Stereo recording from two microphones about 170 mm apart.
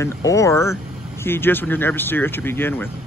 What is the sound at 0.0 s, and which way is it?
Speech, 20° left (ahead or behind).